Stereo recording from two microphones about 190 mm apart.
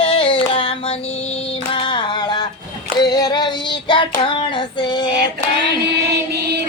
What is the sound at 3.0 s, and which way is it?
Child singing, 20° left (ahead or behind).